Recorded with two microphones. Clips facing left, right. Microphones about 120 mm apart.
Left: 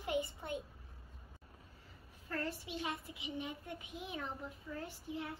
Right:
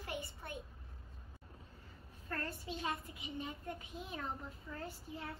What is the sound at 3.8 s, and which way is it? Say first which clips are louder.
Speech: left 1 dB; 65° left (ahead or behind).